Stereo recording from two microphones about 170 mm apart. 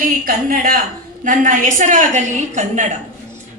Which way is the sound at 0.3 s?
55° right (ahead or behind).